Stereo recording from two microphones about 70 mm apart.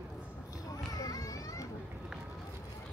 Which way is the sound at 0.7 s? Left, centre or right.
Left.